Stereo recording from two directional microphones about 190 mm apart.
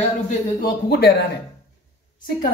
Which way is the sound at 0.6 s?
50° left (ahead or behind).